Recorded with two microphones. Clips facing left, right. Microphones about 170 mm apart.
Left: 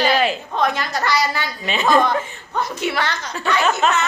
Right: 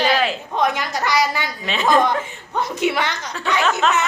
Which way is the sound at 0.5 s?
15° right (ahead or behind).